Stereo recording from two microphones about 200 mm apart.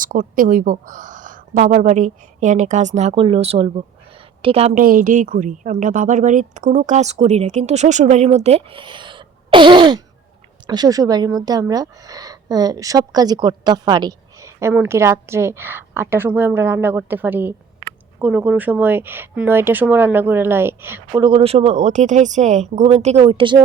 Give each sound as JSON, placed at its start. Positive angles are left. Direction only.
{"t": 0.0, "sound": "speech", "side_deg": -40}
{"t": 4.8, "sound": "a woman's voice", "side_deg": -45}